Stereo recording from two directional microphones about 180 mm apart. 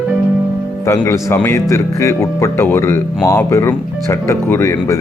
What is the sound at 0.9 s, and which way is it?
Speech, 15° left (ahead or behind).